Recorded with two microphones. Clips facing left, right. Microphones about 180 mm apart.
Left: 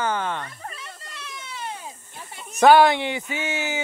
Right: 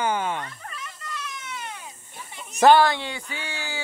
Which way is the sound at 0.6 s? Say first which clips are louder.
Even; 30° left (ahead or behind).